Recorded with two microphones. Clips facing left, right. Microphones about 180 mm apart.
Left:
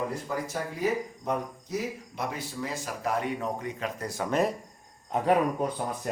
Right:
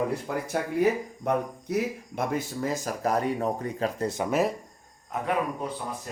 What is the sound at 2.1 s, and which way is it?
Speech, 50° right (ahead or behind).